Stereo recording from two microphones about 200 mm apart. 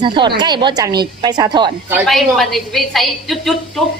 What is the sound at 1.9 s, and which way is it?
A woman's voice, 5° right (ahead or behind).